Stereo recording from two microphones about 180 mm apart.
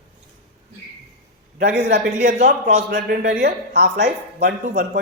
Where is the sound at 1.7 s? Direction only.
70° right (ahead or behind).